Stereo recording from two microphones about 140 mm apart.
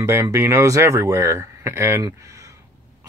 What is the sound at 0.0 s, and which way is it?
Speech, 20° right (ahead or behind).